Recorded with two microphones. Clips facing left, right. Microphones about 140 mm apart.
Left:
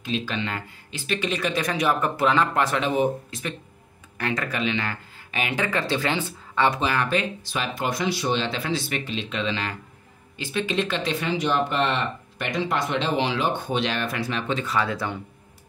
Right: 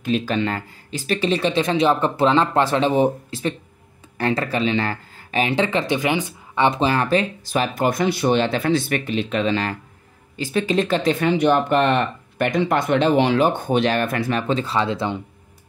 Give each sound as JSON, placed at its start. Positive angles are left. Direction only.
{"t": 0.0, "sound": "speech", "side_deg": -45}
{"t": 6.8, "sound": "speech", "side_deg": -35}
{"t": 14.5, "sound": "speech", "side_deg": -30}